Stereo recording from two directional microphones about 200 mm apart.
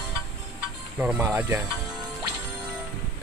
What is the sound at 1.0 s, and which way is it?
Speech, 10° right (ahead or behind).